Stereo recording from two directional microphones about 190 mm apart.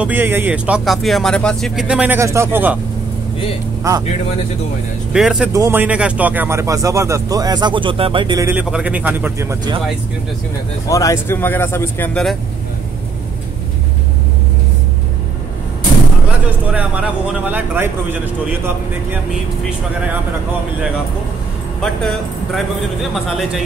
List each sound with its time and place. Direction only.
0.0 s speech: 10° right (ahead or behind)
3.9 s speech: 20° right (ahead or behind)
5.1 s speech: 5° right (ahead or behind)
5.5 s speech: 15° right (ahead or behind)
10.9 s speech: 15° left (ahead or behind)
16.7 s speech: 5° right (ahead or behind)
21.8 s speech: centre (ahead or behind)